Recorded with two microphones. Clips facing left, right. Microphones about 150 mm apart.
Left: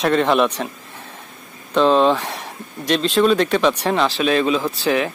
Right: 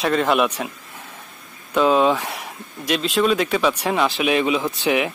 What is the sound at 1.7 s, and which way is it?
Speech, 10° right (ahead or behind).